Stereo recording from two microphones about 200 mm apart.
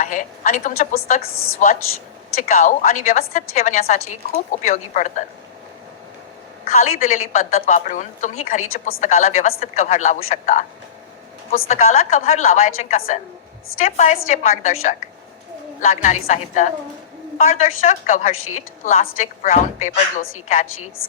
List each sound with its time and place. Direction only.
0.0 s a woman's voice: 40° left (ahead or behind)
6.7 s a woman's voice: 35° left (ahead or behind)
11.7 s a woman's voice: 40° left (ahead or behind)
15.8 s a woman's voice: 40° left (ahead or behind)